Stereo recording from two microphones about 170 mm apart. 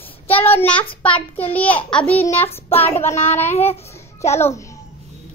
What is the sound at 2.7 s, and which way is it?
Child singing, 35° left (ahead or behind).